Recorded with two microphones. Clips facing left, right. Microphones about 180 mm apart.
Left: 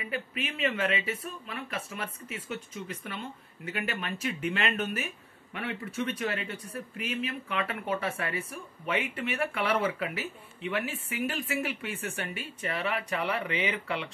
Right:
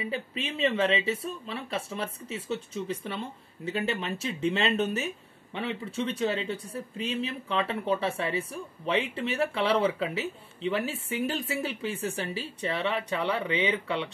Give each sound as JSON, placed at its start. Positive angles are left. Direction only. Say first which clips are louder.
{"t": 0.1, "sound": "speech", "louder": "right 2 dB", "side_deg": -25}